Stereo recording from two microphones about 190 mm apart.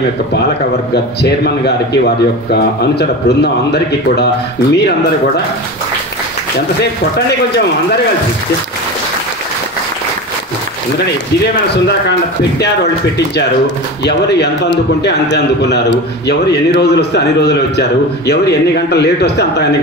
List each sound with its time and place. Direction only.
2.5 s a man's voice: 60° left (ahead or behind)
14.0 s a man's voice: 65° left (ahead or behind)